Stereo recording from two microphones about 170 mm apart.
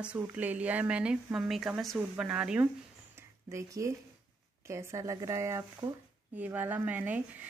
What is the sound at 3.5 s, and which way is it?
Speech, 20° right (ahead or behind).